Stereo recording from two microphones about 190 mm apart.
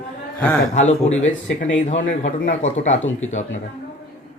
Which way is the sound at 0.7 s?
35° left (ahead or behind).